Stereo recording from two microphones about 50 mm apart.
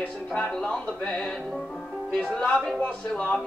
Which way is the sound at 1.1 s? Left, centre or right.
Centre.